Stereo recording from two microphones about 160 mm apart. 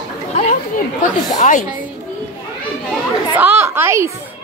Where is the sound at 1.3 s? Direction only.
50° left (ahead or behind).